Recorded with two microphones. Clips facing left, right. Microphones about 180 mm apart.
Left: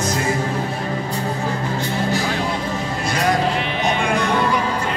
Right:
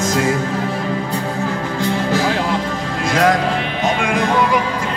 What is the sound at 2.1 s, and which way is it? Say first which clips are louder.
Music: right 4 dB; 90° right.